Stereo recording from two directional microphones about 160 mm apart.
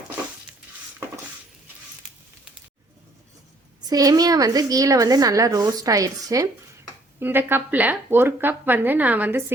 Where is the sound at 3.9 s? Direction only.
25° right (ahead or behind).